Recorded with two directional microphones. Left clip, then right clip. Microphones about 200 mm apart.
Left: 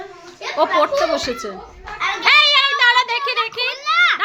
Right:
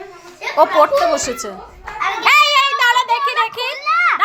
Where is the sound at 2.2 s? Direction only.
10° left (ahead or behind).